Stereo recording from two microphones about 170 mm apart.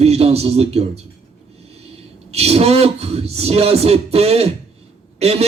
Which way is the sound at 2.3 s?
35° right (ahead or behind).